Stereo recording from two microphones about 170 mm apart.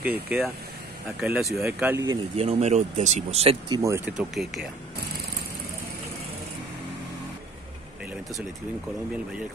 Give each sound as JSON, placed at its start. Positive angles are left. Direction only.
{"t": 0.0, "sound": "speech", "side_deg": -5}
{"t": 2.3, "sound": "speech", "side_deg": -40}